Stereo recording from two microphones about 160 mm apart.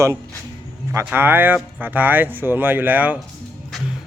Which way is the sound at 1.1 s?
10° right (ahead or behind).